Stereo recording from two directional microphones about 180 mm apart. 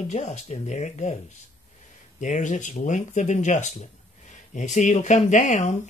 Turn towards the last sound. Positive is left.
turn(degrees=40)  # may be behind; listen again after turning